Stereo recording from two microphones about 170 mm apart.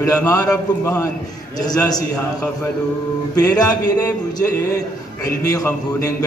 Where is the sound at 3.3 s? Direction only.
20° left (ahead or behind).